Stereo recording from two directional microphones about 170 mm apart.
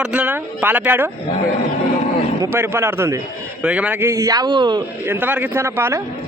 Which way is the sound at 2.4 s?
15° right (ahead or behind).